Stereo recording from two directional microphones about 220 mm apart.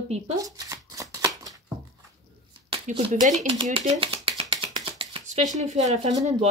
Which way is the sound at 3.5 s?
25° right (ahead or behind).